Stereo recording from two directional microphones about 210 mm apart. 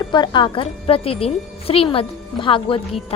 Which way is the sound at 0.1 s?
20° left (ahead or behind).